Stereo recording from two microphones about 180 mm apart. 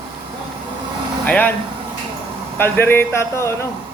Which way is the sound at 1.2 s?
10° left (ahead or behind).